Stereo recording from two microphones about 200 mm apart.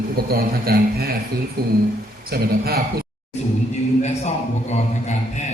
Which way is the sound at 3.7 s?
35° left (ahead or behind).